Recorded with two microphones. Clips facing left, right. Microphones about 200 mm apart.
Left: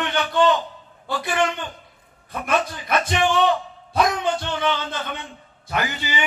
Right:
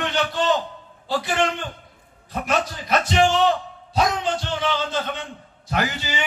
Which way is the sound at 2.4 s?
55° left (ahead or behind).